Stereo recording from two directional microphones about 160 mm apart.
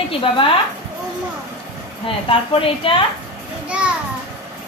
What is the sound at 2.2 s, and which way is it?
Speech, 35° left (ahead or behind).